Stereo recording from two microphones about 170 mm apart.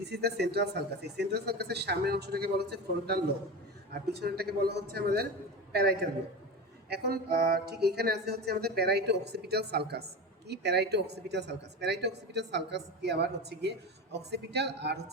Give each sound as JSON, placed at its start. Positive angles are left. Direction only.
{"t": 0.0, "sound": "speech", "side_deg": -75}